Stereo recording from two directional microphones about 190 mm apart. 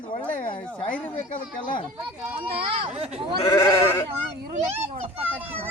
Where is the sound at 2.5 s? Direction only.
30° right (ahead or behind).